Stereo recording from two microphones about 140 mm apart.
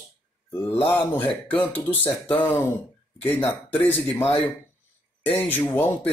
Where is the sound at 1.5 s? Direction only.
35° left (ahead or behind).